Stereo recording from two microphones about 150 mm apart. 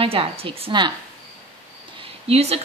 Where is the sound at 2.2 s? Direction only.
40° right (ahead or behind).